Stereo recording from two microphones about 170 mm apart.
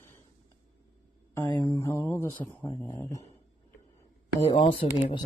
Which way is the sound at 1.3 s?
10° left (ahead or behind).